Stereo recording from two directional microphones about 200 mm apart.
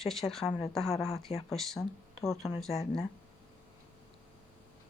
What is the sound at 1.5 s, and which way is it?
Speech, centre (ahead or behind).